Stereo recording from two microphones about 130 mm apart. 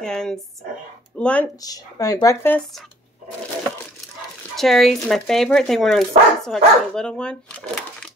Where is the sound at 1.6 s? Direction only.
30° left (ahead or behind).